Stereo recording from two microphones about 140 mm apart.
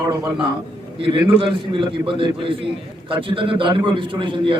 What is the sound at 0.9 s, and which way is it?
A man's voice, 40° right (ahead or behind).